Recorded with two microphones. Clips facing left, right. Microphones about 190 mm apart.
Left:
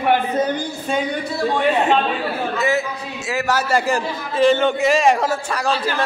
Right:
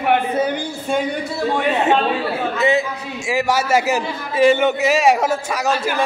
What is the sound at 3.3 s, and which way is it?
A man's voice, 10° right (ahead or behind).